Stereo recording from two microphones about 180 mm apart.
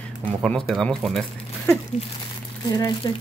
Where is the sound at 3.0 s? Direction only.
20° left (ahead or behind).